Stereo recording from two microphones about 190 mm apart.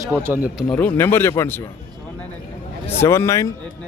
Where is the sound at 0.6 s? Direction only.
10° left (ahead or behind).